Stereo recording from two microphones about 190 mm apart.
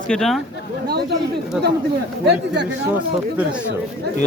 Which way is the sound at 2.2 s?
65° right (ahead or behind).